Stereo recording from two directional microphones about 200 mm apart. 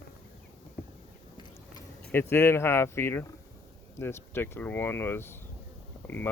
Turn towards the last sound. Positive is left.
turn(degrees=10)  # may be behind; listen again after turning